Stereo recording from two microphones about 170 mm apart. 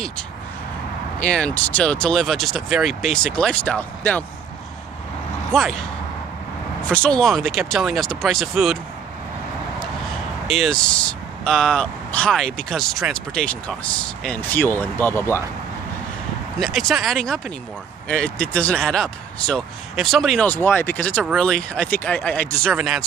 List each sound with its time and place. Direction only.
1.2 s speech: 5° left (ahead or behind)
5.5 s speech: centre (ahead or behind)
6.8 s speech: 5° left (ahead or behind)
10.5 s speech: centre (ahead or behind)
16.5 s speech: centre (ahead or behind)